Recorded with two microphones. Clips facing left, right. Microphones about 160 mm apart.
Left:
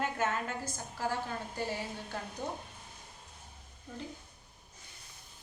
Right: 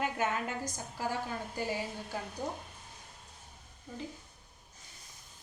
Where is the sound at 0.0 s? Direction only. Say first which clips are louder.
Even; 15° right (ahead or behind).